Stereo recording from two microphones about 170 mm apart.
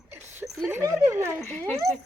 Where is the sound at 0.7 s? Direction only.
15° right (ahead or behind).